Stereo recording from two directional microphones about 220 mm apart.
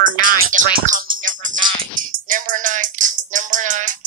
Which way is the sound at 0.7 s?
35° right (ahead or behind).